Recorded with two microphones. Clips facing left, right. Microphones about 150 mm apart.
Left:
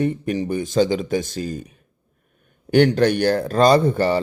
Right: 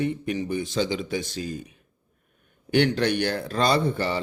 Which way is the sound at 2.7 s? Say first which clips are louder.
Left 6 dB; 45° left (ahead or behind).